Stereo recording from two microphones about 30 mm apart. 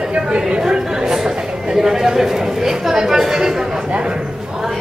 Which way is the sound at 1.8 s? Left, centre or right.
Centre.